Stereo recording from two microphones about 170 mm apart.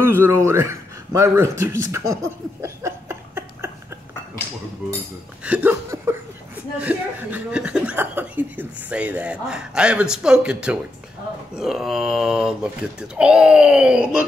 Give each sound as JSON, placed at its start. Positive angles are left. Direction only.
{"t": 0.0, "sound": "a man's voice", "side_deg": -15}
{"t": 5.4, "sound": "hiccup", "side_deg": -10}
{"t": 6.8, "sound": "speech", "side_deg": -10}